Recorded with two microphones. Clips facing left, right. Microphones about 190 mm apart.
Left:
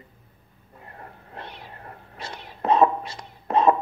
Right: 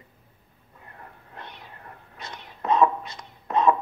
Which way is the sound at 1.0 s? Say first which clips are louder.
Left 3 dB; 30° left (ahead or behind).